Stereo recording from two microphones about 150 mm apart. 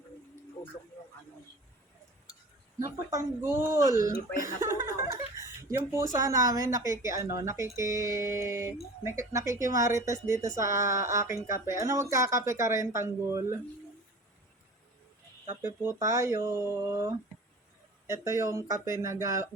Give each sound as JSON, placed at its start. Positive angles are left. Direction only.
{"t": 2.8, "sound": "speech", "side_deg": -20}
{"t": 15.6, "sound": "speech", "side_deg": -20}
{"t": 18.1, "sound": "speech", "side_deg": -20}